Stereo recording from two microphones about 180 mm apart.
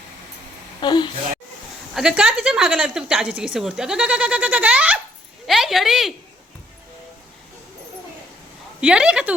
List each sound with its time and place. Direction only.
0.8 s a woman's voice: 25° left (ahead or behind)
2.0 s a woman's voice: 5° right (ahead or behind)
8.8 s speech: 5° right (ahead or behind)